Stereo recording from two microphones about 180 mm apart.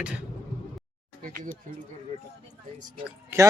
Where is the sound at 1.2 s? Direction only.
50° right (ahead or behind).